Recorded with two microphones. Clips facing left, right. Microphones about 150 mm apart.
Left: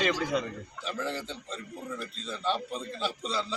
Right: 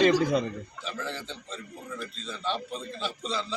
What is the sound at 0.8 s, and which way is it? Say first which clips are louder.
A man's voice: left 3 dB; 10° left (ahead or behind).